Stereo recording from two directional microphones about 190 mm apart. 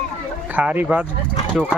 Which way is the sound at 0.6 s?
5° right (ahead or behind).